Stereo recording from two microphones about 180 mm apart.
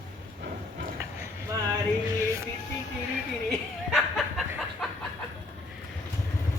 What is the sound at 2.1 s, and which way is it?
Music, 15° right (ahead or behind).